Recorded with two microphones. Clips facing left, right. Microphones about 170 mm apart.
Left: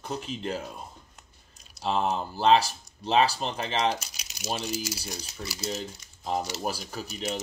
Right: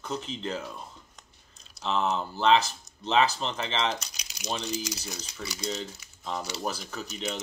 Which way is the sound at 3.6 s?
45° left (ahead or behind).